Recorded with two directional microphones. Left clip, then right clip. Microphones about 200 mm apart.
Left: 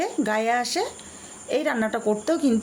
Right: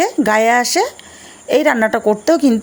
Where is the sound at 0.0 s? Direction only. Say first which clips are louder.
Right 11 dB; 40° right (ahead or behind).